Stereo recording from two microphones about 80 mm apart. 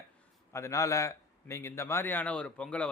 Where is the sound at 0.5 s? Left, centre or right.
Left.